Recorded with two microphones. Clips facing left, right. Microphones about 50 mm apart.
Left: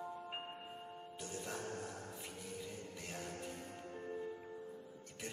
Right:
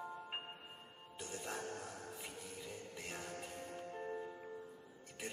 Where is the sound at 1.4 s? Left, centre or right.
Centre.